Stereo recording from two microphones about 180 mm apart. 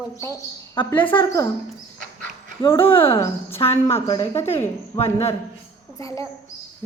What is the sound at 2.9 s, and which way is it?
Speech, 30° left (ahead or behind).